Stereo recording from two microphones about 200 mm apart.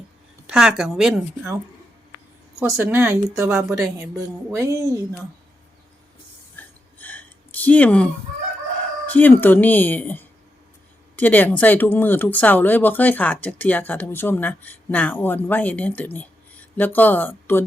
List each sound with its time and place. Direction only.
0.4 s speech: 5° right (ahead or behind)
2.6 s speech: 15° right (ahead or behind)
6.6 s a sound: 10° left (ahead or behind)
9.1 s speech: 10° left (ahead or behind)